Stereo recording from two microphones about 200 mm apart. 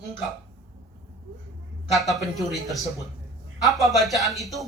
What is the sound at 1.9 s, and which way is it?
Speech, centre (ahead or behind).